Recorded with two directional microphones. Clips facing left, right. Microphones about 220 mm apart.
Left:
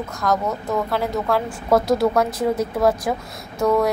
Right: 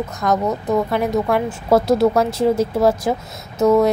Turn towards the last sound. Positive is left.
turn(degrees=-25)  # may be behind; listen again after turning